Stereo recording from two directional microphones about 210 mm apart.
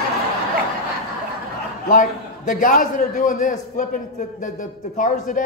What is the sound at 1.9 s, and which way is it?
A man's voice, 40° left (ahead or behind).